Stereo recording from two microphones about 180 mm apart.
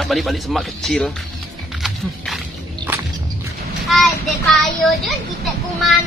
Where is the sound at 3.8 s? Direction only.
Centre (ahead or behind).